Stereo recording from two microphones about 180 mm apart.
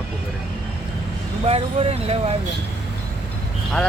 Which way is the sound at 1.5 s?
35° right (ahead or behind).